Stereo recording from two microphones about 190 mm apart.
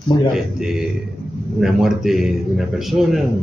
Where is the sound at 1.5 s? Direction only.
Centre (ahead or behind).